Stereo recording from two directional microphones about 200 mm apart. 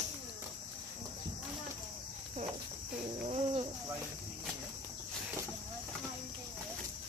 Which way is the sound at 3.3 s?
25° right (ahead or behind).